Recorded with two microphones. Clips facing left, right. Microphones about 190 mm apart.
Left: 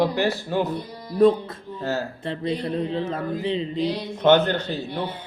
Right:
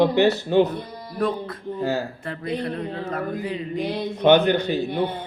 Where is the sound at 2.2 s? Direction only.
25° left (ahead or behind).